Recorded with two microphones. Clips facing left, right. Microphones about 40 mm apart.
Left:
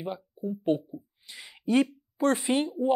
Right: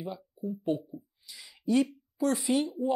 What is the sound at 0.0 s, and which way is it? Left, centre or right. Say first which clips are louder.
Speech: left 3 dB; left.